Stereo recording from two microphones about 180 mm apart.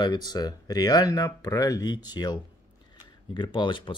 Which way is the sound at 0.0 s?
20° left (ahead or behind).